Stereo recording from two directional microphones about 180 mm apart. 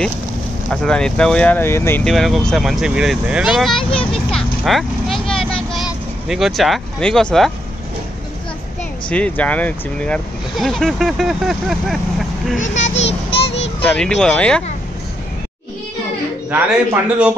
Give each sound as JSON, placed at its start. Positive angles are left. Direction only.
{"t": 0.7, "sound": "speech", "side_deg": 5}
{"t": 2.0, "sound": "speech", "side_deg": 0}
{"t": 4.3, "sound": "vehicle", "side_deg": 0}
{"t": 5.8, "sound": "speech", "side_deg": 0}
{"t": 9.1, "sound": "speech", "side_deg": 5}
{"t": 12.5, "sound": "a child's voice", "side_deg": 40}
{"t": 12.9, "sound": "child singing", "side_deg": 75}
{"t": 13.8, "sound": "speech", "side_deg": 5}
{"t": 16.4, "sound": "a man's voice", "side_deg": -10}